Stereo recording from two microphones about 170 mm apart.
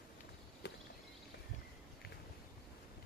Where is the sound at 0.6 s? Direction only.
75° left (ahead or behind).